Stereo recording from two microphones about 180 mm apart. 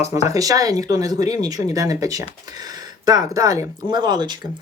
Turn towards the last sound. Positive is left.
turn(degrees=-25)  # may be behind; listen again after turning